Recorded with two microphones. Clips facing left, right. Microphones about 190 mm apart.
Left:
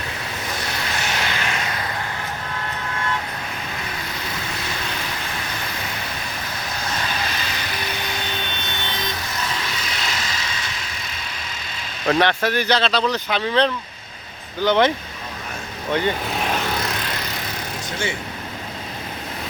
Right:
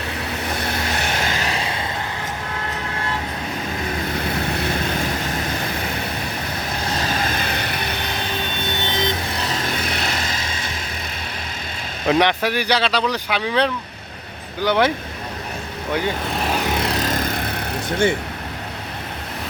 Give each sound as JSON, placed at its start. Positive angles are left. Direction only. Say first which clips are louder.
{"t": 0.5, "sound": "vehicle", "louder": "right 3 dB", "side_deg": -55}
{"t": 4.2, "sound": "vehicle", "louder": "right 7 dB", "side_deg": -60}
{"t": 6.9, "sound": "vehicle", "louder": "right 4 dB", "side_deg": -40}
{"t": 8.8, "sound": "vehicle", "louder": "right 6 dB", "side_deg": -20}
{"t": 9.3, "sound": "vehicle", "louder": "right 3 dB", "side_deg": -35}
{"t": 9.6, "sound": "vehicle", "louder": "right 4 dB", "side_deg": -55}
{"t": 12.0, "sound": "speech", "louder": "right 1 dB", "side_deg": -15}
{"t": 15.9, "sound": "vehicle", "louder": "left 1 dB", "side_deg": -5}
{"t": 16.8, "sound": "vehicle", "louder": "right 6 dB", "side_deg": -40}